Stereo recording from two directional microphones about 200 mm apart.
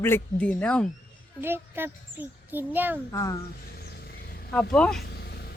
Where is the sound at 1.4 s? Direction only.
10° right (ahead or behind).